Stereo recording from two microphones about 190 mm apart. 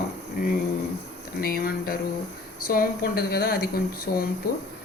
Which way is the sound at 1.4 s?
50° left (ahead or behind).